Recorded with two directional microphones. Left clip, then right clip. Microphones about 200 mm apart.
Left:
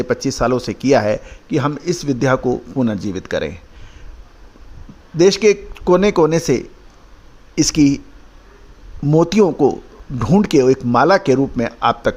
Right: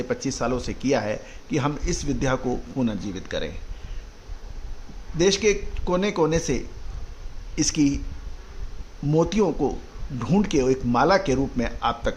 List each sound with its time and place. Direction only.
0.0 s a man's voice: 30° left (ahead or behind)
5.1 s a man's voice: 35° left (ahead or behind)
9.0 s a man's voice: 35° left (ahead or behind)